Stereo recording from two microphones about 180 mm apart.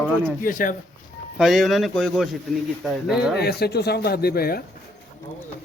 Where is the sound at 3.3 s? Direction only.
60° left (ahead or behind).